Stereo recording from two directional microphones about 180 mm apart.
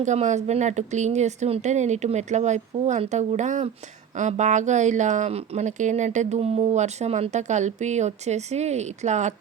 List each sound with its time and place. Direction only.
0.0 s speech: 40° right (ahead or behind)